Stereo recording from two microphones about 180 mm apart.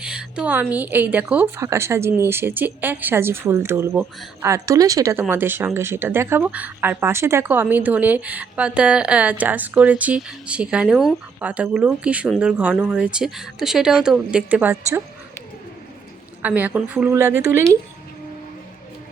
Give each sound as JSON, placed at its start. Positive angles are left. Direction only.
{"t": 0.0, "sound": "a woman's voice", "side_deg": -5}
{"t": 16.4, "sound": "speech", "side_deg": -10}